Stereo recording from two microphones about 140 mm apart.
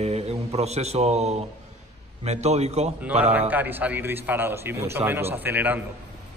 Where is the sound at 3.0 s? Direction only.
10° right (ahead or behind).